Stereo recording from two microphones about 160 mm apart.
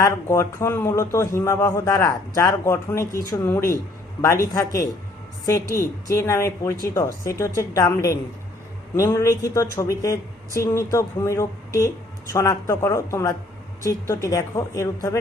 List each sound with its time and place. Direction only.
0.0 s a man's voice: 20° left (ahead or behind)